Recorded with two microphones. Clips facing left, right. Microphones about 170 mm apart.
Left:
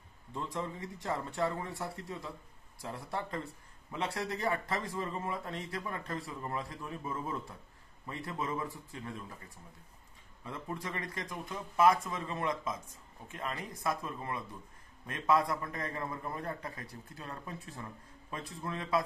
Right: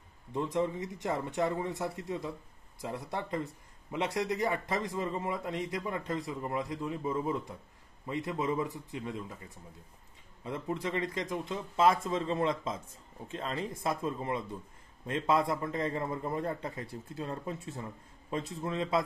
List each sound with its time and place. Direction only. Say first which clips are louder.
0.3 s speech: right 7 dB; 20° right (ahead or behind)
10.4 s speech: right 6 dB; 20° right (ahead or behind)